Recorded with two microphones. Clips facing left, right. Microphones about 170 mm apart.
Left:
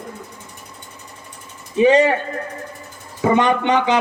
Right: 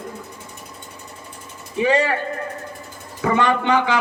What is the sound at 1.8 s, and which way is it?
Speech, 20° left (ahead or behind).